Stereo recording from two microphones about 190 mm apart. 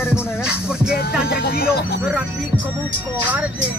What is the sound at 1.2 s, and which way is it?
Speech, 55° left (ahead or behind).